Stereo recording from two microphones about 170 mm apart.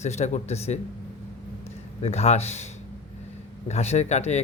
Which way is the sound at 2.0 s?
40° left (ahead or behind).